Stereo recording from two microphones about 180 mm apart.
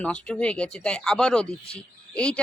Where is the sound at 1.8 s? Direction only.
5° left (ahead or behind).